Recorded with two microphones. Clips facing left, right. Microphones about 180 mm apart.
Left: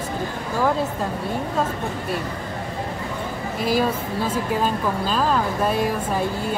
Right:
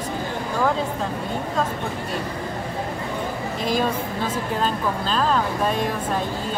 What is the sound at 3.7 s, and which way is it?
A woman's voice, 5° left (ahead or behind).